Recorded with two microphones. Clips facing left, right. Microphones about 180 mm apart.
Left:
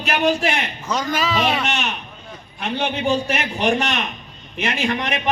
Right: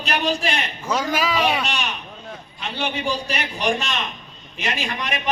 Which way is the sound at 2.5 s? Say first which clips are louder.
Left 4 dB; 60° left (ahead or behind).